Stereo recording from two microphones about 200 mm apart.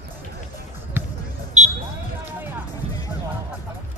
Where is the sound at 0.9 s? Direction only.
10° right (ahead or behind).